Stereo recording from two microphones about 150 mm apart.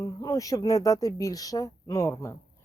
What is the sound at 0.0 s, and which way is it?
Speech, 20° left (ahead or behind).